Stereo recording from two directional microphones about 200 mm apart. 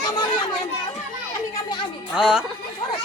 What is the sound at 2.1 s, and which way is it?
Speech, centre (ahead or behind).